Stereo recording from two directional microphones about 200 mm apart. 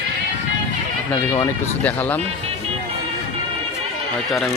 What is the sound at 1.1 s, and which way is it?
Speech, 15° left (ahead or behind).